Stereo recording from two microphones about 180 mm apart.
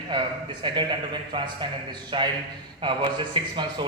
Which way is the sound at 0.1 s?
25° right (ahead or behind).